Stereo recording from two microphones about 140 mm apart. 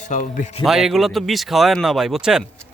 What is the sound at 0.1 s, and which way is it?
Speech, 65° left (ahead or behind).